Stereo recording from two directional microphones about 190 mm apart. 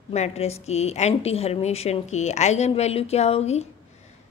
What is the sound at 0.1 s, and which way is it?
A woman's voice, 35° left (ahead or behind).